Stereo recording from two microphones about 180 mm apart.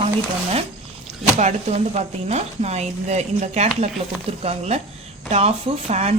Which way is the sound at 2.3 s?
40° right (ahead or behind).